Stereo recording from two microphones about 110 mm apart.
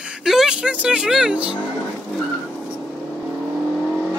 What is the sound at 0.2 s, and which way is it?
Speech, 5° right (ahead or behind).